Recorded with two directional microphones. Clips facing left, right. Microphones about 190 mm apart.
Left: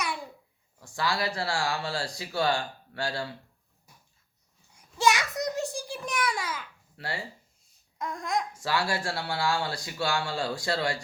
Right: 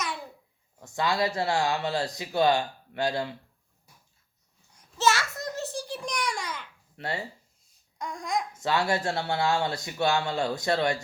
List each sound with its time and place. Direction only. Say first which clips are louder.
0.8 s speech: right 3 dB; 20° right (ahead or behind)
4.7 s a sound: even; 10° left (ahead or behind)
6.9 s speech: right 3 dB; 20° right (ahead or behind)
7.9 s babbling: even; centre (ahead or behind)
8.5 s speech: right 3 dB; 20° right (ahead or behind)